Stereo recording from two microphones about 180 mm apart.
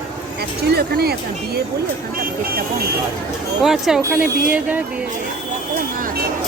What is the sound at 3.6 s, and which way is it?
Speech, centre (ahead or behind).